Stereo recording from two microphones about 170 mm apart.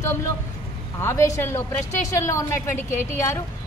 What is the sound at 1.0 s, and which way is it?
A woman's voice, 15° left (ahead or behind).